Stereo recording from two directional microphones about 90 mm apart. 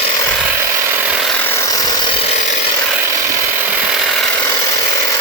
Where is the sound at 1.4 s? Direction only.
25° left (ahead or behind).